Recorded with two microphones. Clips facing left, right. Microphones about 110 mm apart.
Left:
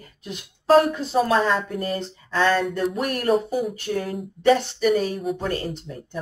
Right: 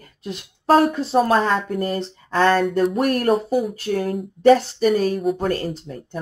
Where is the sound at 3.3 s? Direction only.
Centre (ahead or behind).